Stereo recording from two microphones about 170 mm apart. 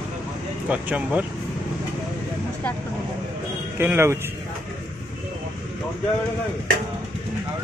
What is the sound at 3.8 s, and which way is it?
Speech, 15° right (ahead or behind).